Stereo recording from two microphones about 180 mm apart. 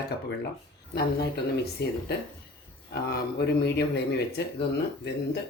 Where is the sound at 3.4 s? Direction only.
65° left (ahead or behind).